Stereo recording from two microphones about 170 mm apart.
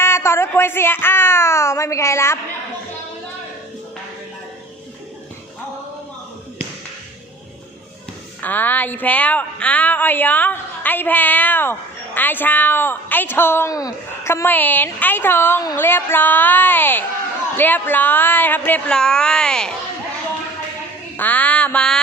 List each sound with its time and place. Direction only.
0.0 s speech: 15° left (ahead or behind)
8.4 s a woman's voice: 10° left (ahead or behind)
21.2 s a woman's voice: 10° left (ahead or behind)